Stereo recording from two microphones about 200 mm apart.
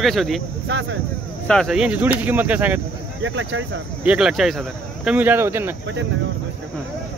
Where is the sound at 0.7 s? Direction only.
65° right (ahead or behind).